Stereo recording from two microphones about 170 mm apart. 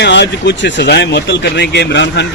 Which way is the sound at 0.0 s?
90° left.